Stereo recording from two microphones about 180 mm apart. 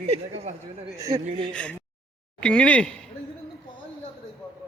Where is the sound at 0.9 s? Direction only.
15° right (ahead or behind).